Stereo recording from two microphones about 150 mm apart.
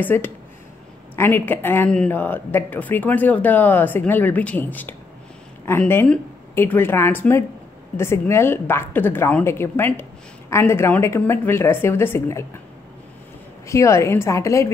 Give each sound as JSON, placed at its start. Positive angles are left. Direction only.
{"t": 0.0, "sound": "speech", "side_deg": 15}
{"t": 13.7, "sound": "a woman's voice", "side_deg": 20}